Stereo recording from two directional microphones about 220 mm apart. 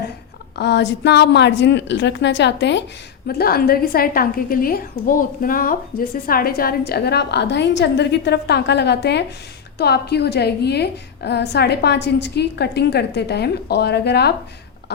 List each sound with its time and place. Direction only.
0.5 s a woman's voice: 50° left (ahead or behind)